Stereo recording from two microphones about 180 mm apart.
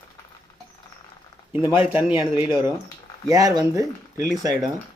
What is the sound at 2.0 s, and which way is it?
A man's voice, 10° right (ahead or behind).